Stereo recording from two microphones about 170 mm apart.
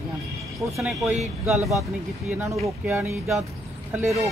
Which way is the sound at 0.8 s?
Centre (ahead or behind).